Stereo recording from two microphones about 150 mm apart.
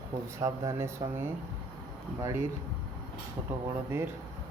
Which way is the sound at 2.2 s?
20° right (ahead or behind).